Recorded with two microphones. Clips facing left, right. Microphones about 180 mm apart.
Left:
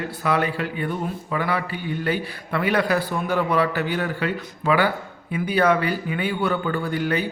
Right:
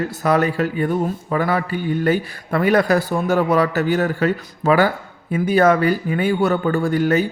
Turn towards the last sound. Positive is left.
turn(degrees=-45)  # may be behind; listen again after turning